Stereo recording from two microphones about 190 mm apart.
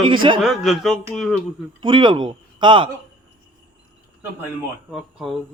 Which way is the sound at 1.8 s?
25° right (ahead or behind).